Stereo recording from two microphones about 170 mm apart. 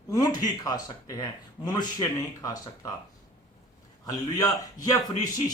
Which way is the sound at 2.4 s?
20° left (ahead or behind).